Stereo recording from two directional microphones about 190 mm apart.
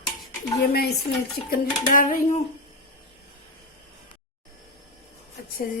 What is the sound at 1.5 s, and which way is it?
Music, 45° left (ahead or behind).